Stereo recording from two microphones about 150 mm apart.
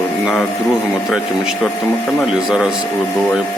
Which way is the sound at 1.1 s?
Centre (ahead or behind).